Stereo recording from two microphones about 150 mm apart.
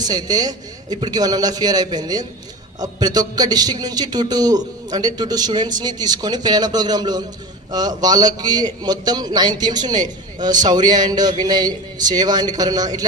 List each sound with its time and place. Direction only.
0.0 s a man's voice: 25° right (ahead or behind)